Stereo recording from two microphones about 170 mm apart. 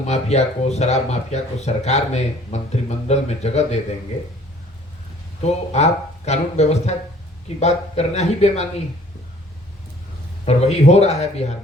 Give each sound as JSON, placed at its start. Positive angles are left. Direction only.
{"t": 0.0, "sound": "speech", "side_deg": 40}
{"t": 5.4, "sound": "speech", "side_deg": 40}
{"t": 10.4, "sound": "speech", "side_deg": 40}